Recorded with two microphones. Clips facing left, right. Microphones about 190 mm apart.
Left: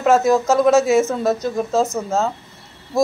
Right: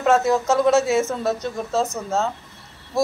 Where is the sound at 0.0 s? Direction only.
10° left (ahead or behind).